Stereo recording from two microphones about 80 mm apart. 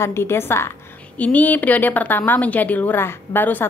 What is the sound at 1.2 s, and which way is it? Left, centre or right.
A woman's voice, centre.